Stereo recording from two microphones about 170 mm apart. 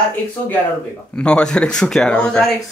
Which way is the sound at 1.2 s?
5° left (ahead or behind).